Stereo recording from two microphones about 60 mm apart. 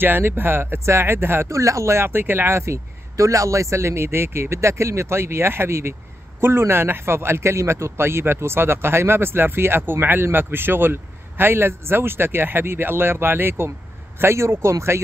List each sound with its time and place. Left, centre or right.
0.0 s speech: right
0.7 s speech: right
1.5 s speech: right